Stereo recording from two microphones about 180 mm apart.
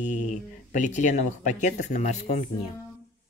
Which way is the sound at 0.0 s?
45° left (ahead or behind).